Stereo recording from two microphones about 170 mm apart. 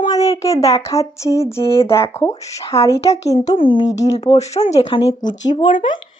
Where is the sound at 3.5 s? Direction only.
30° left (ahead or behind).